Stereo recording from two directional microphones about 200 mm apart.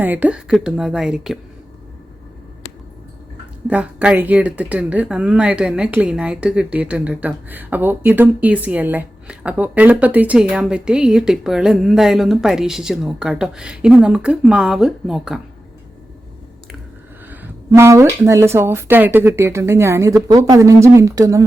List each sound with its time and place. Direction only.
0.0 s speech: 10° right (ahead or behind)
3.7 s speech: 5° right (ahead or behind)
17.2 s speech: 10° right (ahead or behind)